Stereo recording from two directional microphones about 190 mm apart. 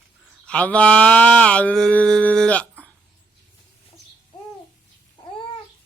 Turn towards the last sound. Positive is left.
turn(degrees=25)  # may be behind; listen again after turning